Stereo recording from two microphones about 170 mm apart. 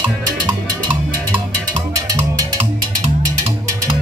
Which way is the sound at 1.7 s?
20° right (ahead or behind).